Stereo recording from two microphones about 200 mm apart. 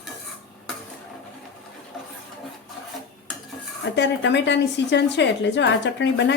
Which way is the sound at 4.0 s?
60° left (ahead or behind).